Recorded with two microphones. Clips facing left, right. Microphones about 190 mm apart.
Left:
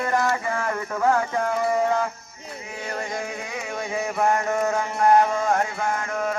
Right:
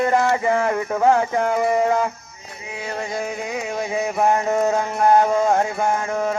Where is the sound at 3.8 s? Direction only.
20° right (ahead or behind).